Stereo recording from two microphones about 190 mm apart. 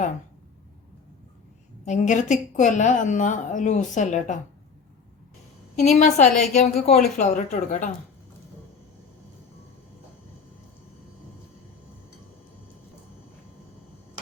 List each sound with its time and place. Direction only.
1.8 s a woman's voice: 40° left (ahead or behind)
5.8 s a woman's voice: 40° left (ahead or behind)